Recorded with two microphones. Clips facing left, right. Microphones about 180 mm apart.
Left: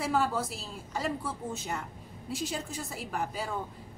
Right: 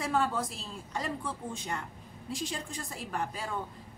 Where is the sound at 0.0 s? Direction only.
5° left (ahead or behind).